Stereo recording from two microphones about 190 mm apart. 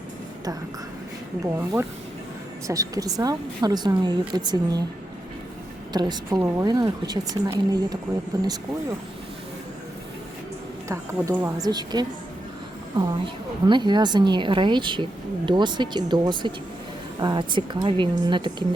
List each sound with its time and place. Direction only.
1.5 s a woman's voice: 15° right (ahead or behind)
5.9 s a woman's voice: 20° right (ahead or behind)
10.8 s a woman's voice: 15° right (ahead or behind)